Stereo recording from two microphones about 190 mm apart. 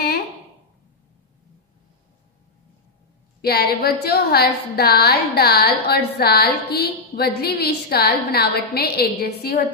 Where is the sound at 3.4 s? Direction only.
55° left (ahead or behind).